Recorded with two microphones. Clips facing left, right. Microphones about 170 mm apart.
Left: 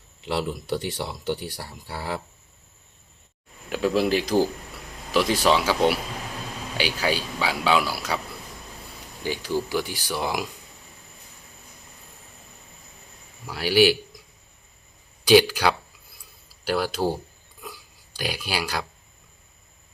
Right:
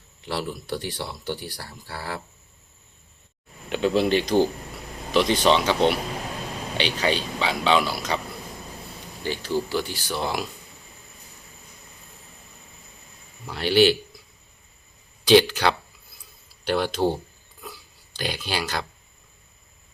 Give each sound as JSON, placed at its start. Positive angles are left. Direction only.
{"t": 0.3, "sound": "speech", "side_deg": 20}
{"t": 3.7, "sound": "a man's voice", "side_deg": 5}
{"t": 9.2, "sound": "a man's voice", "side_deg": 10}
{"t": 13.5, "sound": "a man's voice", "side_deg": 5}
{"t": 15.3, "sound": "speech", "side_deg": 10}
{"t": 17.6, "sound": "a sound", "side_deg": 10}